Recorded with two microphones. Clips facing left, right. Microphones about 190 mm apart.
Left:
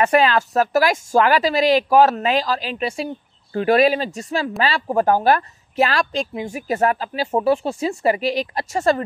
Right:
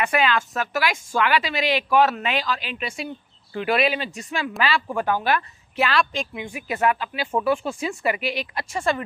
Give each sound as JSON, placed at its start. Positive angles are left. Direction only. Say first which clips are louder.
{"t": 0.0, "sound": "speech", "louder": "left 6 dB", "side_deg": 40}